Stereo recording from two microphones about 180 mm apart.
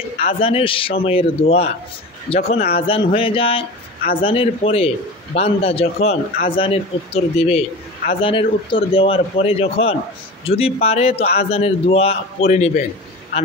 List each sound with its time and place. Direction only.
0.2 s speech: 30° left (ahead or behind)